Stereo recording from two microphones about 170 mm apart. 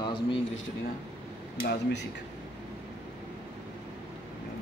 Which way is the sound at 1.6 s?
70° left (ahead or behind).